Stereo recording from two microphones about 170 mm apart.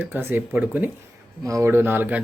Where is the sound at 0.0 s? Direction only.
10° right (ahead or behind).